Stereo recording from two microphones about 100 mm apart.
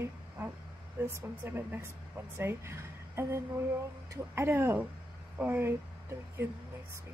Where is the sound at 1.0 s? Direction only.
20° right (ahead or behind).